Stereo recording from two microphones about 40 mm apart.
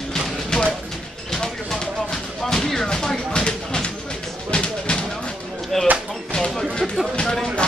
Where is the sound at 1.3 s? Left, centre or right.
Centre.